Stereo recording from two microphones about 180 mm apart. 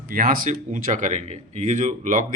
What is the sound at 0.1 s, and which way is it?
Speech, 55° right (ahead or behind).